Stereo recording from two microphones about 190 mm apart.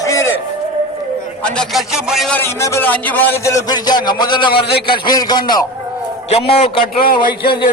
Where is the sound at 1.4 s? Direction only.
Centre (ahead or behind).